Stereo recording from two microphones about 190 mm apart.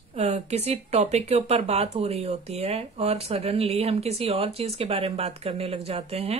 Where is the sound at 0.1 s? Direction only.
35° right (ahead or behind).